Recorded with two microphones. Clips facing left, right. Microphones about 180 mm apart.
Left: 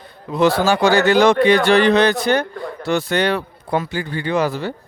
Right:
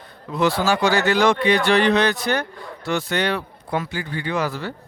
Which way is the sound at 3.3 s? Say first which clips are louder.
Left 4 dB; 35° left (ahead or behind).